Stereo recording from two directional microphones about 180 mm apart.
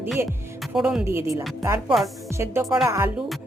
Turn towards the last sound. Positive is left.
turn(degrees=-15)  # may be behind; listen again after turning